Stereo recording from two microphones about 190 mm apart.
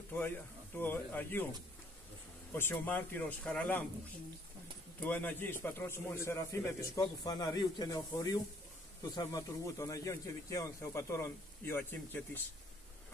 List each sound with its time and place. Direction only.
0.7 s a man's voice: 10° left (ahead or behind)
2.5 s a man's voice: 10° left (ahead or behind)
5.0 s a man's voice: 10° left (ahead or behind)